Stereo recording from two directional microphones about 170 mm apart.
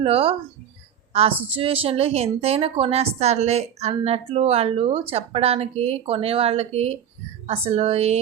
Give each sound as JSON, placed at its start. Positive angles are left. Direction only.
{"t": 0.0, "sound": "a woman's voice", "side_deg": -35}